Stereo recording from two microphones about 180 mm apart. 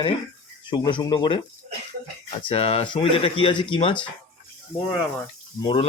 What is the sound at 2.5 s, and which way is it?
Speech, 35° left (ahead or behind).